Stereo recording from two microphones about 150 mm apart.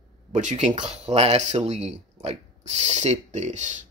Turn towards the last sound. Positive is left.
turn(degrees=-50)  # may be behind; listen again after turning